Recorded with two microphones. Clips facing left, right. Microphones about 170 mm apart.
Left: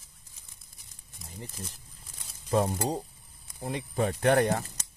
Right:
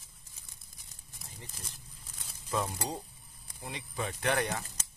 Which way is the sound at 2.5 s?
40° left (ahead or behind).